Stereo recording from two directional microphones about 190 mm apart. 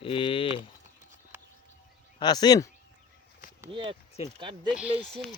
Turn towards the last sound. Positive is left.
turn(degrees=0)  # may be behind; listen again after turning